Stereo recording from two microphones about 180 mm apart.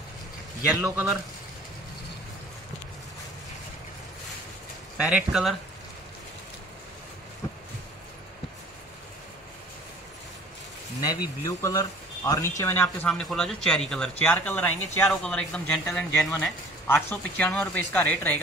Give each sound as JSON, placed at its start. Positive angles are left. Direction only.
{"t": 0.7, "sound": "speech", "side_deg": -5}
{"t": 4.9, "sound": "speech", "side_deg": -5}
{"t": 11.0, "sound": "speech", "side_deg": 20}
{"t": 12.8, "sound": "speech", "side_deg": 5}